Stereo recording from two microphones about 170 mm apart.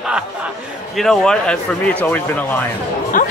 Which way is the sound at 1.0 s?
Centre (ahead or behind).